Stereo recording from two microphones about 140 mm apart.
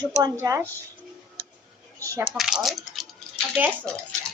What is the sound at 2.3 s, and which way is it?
Speech, centre (ahead or behind).